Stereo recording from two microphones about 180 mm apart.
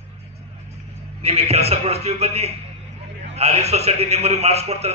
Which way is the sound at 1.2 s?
35° right (ahead or behind).